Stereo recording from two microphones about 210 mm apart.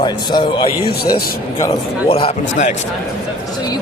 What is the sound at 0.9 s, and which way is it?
Speech, 50° left (ahead or behind).